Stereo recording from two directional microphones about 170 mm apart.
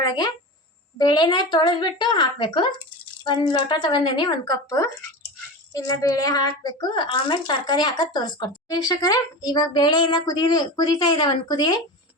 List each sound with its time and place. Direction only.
0.0 s a child's voice: 25° left (ahead or behind)